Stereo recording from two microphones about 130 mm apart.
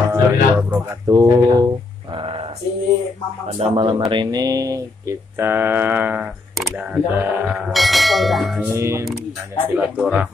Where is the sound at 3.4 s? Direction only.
45° right (ahead or behind); by 8.6 s centre (ahead or behind).